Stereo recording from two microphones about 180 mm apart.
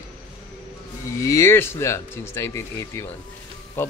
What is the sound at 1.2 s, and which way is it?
A man's voice, 15° left (ahead or behind).